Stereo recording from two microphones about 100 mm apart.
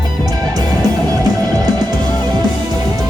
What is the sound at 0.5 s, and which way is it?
Music, 40° right (ahead or behind).